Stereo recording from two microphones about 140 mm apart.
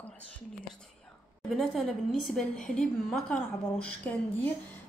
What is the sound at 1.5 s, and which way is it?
A woman's voice, centre (ahead or behind).